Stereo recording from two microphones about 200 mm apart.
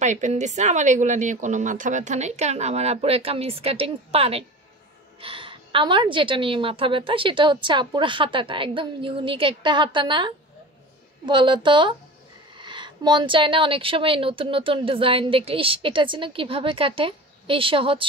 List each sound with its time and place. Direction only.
0.0 s a woman's voice: 35° right (ahead or behind)